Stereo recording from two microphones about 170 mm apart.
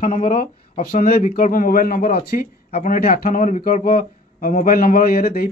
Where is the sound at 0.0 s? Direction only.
50° left (ahead or behind).